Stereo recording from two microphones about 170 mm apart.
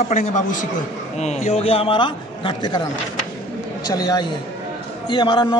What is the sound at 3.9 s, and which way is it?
A man's voice, 25° left (ahead or behind).